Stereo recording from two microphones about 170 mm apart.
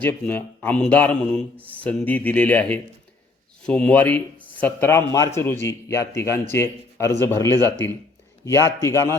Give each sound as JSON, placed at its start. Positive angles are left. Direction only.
{"t": 0.0, "sound": "a man's voice", "side_deg": 10}